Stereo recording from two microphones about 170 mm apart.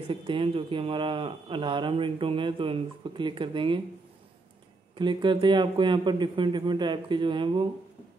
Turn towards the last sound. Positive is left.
turn(degrees=-30)  # may be behind; listen again after turning